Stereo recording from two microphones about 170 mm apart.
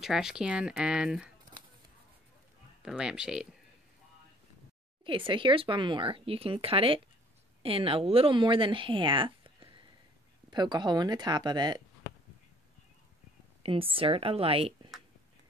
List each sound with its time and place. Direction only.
0.0 s speech: 5° right (ahead or behind)
2.8 s speech: 5° right (ahead or behind)
5.0 s speech: 30° right (ahead or behind)
13.6 s speech: 30° right (ahead or behind)